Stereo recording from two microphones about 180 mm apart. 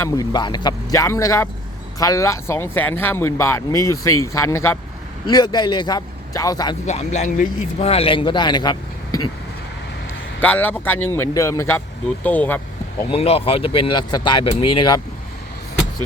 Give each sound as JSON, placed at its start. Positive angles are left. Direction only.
{"t": 0.0, "sound": "speech", "side_deg": 20}
{"t": 6.8, "sound": "a man's voice", "side_deg": 40}
{"t": 10.4, "sound": "speech", "side_deg": 10}
{"t": 13.1, "sound": "speech", "side_deg": 35}